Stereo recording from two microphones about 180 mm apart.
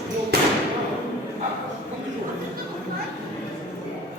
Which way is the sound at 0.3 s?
65° right (ahead or behind).